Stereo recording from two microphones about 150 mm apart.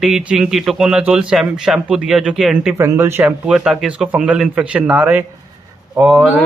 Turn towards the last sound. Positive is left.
turn(degrees=0)  # may be behind; listen again after turning